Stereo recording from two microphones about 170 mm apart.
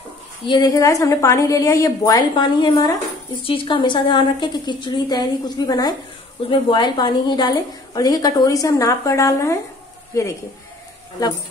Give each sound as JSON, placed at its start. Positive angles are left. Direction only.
{"t": 0.5, "sound": "a woman's voice", "side_deg": 20}